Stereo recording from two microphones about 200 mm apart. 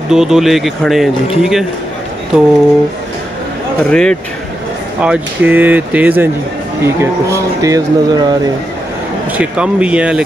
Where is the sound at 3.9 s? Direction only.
5° left (ahead or behind).